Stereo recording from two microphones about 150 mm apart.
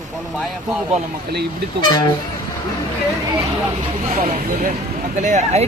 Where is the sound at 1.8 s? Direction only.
30° left (ahead or behind).